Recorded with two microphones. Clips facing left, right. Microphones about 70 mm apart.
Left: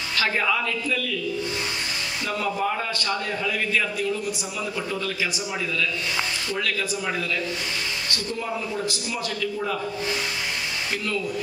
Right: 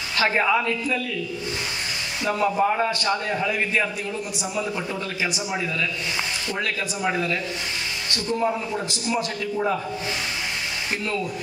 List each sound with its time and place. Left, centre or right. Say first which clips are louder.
0.2 s a man's voice: right 3 dB; right
2.2 s a man's voice: right 5 dB; right
6.6 s a man's voice: right 2 dB; right